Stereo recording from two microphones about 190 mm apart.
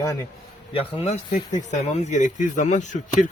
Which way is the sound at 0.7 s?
35° left (ahead or behind).